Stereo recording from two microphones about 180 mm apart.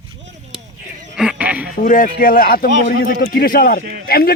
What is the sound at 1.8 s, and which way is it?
A man's voice, 50° left (ahead or behind).